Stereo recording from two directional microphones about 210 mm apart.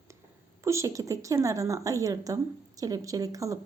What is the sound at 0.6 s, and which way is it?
A woman's voice, 15° right (ahead or behind).